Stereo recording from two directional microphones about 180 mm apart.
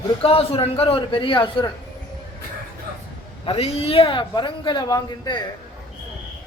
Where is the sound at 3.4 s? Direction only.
35° left (ahead or behind).